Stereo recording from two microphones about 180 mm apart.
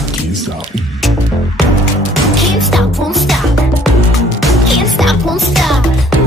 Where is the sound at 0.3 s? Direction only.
Centre (ahead or behind).